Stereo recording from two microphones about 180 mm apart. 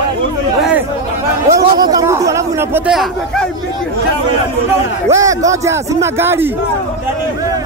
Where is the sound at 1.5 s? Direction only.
20° right (ahead or behind).